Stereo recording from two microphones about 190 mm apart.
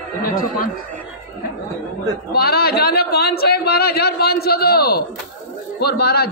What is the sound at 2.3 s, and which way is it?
A man's voice, 55° left (ahead or behind).